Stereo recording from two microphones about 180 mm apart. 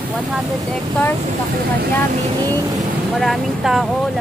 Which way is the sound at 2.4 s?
20° right (ahead or behind).